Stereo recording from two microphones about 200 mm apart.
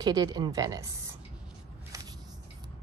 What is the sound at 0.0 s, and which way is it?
Speech, 20° right (ahead or behind).